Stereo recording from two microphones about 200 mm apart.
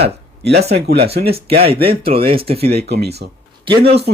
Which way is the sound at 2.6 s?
55° right (ahead or behind).